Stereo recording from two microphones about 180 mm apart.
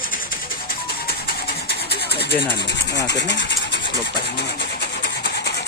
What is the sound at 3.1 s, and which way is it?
Rub, 75° left (ahead or behind).